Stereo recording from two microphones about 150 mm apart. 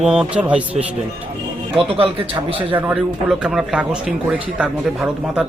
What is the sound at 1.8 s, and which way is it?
Speech, 40° right (ahead or behind).